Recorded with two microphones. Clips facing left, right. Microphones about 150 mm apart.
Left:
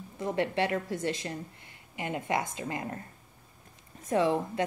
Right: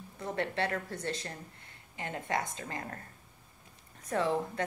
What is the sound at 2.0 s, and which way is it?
A woman's voice, 15° left (ahead or behind).